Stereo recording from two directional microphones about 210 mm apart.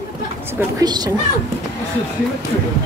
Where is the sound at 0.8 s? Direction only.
20° right (ahead or behind).